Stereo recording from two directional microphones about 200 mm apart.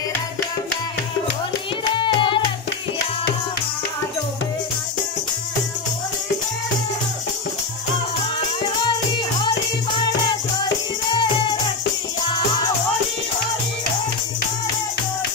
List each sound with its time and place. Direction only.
2.0 s music: 25° left (ahead or behind)